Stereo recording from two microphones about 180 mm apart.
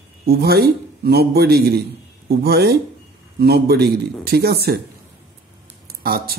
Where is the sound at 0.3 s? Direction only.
60° right (ahead or behind).